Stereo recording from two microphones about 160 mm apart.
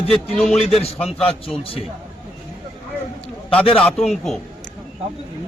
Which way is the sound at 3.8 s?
Centre (ahead or behind).